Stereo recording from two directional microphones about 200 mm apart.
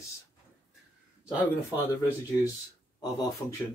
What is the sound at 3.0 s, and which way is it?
Speech, 20° left (ahead or behind).